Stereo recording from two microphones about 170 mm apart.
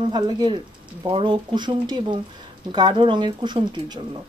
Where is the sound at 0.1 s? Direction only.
25° right (ahead or behind).